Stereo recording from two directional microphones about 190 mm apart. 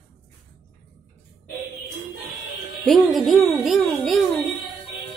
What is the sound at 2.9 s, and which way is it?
Speech, centre (ahead or behind).